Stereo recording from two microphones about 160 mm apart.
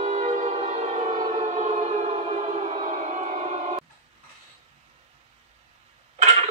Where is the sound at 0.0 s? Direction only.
45° right (ahead or behind).